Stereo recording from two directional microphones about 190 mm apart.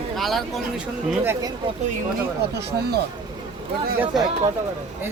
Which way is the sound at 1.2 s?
10° right (ahead or behind).